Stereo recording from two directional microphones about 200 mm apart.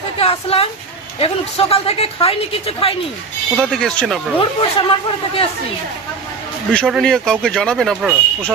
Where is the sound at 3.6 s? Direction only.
Centre (ahead or behind).